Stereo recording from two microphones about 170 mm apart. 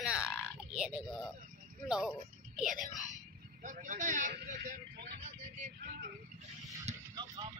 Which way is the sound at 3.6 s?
50° right (ahead or behind).